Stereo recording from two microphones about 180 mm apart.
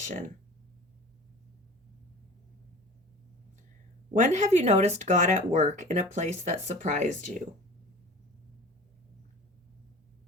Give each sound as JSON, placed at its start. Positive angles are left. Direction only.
{"t": 0.0, "sound": "speech", "side_deg": -45}
{"t": 4.1, "sound": "speech", "side_deg": -40}